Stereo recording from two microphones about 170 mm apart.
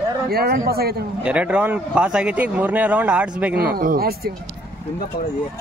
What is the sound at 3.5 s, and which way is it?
Speech, 65° right (ahead or behind).